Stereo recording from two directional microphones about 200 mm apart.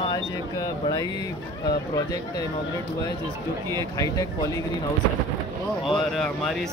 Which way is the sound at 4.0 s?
15° left (ahead or behind).